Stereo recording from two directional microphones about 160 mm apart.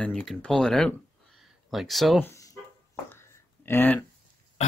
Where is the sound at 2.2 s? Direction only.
20° left (ahead or behind).